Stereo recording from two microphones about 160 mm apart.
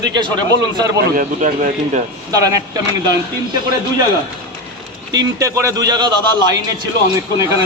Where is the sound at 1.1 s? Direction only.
50° right (ahead or behind).